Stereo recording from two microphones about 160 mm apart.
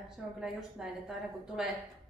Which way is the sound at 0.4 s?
5° right (ahead or behind).